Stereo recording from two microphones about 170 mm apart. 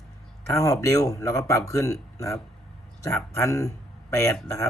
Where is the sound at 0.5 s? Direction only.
20° left (ahead or behind).